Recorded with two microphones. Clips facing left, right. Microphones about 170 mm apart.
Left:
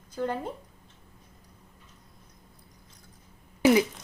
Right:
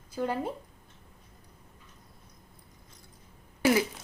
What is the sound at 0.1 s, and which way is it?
Speech, 10° right (ahead or behind).